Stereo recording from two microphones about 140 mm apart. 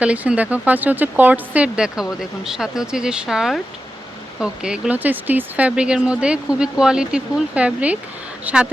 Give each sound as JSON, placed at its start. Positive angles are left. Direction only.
{"t": 0.0, "sound": "speech", "side_deg": -10}